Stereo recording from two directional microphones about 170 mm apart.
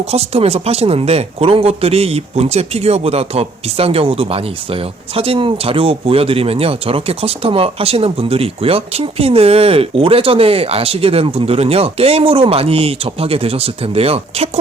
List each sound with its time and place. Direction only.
0.1 s speech: 35° right (ahead or behind)